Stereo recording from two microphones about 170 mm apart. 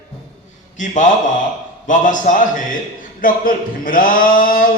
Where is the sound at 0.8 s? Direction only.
50° left (ahead or behind).